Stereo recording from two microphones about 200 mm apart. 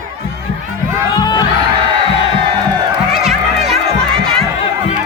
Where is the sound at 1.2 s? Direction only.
20° left (ahead or behind).